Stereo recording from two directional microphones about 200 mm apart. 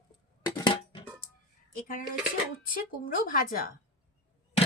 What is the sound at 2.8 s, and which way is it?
Speech, 45° left (ahead or behind).